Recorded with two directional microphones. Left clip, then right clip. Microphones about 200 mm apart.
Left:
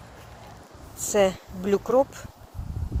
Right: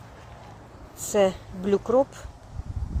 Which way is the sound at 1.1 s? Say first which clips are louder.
Even; 5° right (ahead or behind).